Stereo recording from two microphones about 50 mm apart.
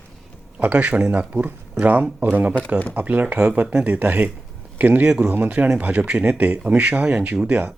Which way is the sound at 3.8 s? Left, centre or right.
Right.